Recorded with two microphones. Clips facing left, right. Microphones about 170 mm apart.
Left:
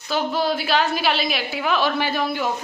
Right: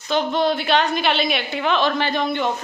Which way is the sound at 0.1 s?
5° left (ahead or behind).